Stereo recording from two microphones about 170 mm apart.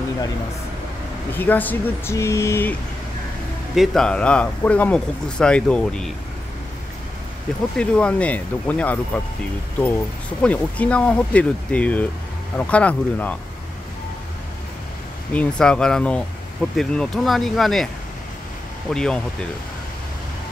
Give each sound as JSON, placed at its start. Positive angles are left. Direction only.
{"t": 1.3, "sound": "speech", "side_deg": 10}
{"t": 3.7, "sound": "speech", "side_deg": 0}
{"t": 7.7, "sound": "speech", "side_deg": 5}
{"t": 10.4, "sound": "speech", "side_deg": 5}
{"t": 15.3, "sound": "speech", "side_deg": 5}
{"t": 18.9, "sound": "speech", "side_deg": 5}